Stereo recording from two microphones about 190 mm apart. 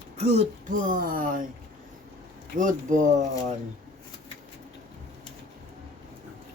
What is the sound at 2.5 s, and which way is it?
Speech, 40° right (ahead or behind).